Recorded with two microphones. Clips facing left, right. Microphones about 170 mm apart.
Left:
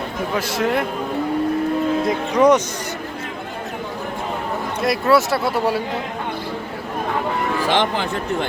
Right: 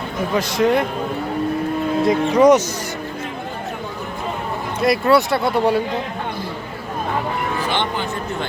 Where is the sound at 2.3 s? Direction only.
10° right (ahead or behind).